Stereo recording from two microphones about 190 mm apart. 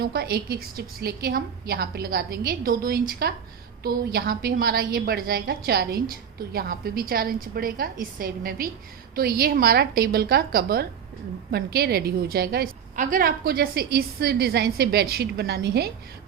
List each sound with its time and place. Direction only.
0.0 s a woman's voice: 55° right (ahead or behind)